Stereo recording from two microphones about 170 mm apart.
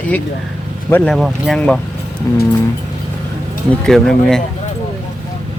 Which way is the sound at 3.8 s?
5° left (ahead or behind).